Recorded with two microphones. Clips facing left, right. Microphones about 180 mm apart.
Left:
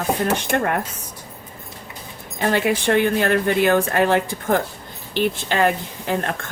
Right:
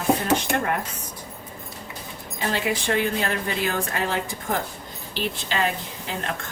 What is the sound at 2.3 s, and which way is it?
A woman's voice, 60° left (ahead or behind).